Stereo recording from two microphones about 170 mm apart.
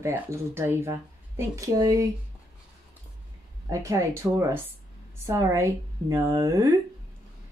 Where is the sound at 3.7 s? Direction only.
20° right (ahead or behind).